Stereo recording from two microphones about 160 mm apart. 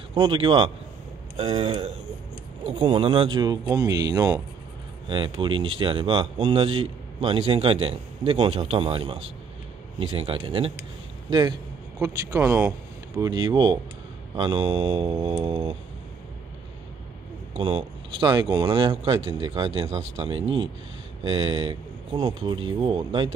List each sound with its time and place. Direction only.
0.1 s speech: 30° right (ahead or behind)
12.0 s speech: 20° right (ahead or behind)
13.2 s speech: 25° right (ahead or behind)
17.6 s speech: 35° right (ahead or behind)